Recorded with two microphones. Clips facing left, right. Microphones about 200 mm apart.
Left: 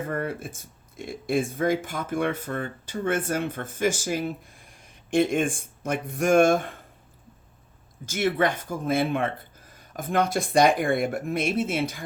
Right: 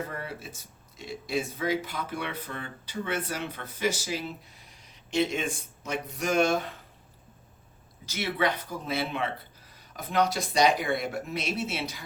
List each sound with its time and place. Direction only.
0.1 s speech: 50° left (ahead or behind)
8.0 s speech: 50° left (ahead or behind)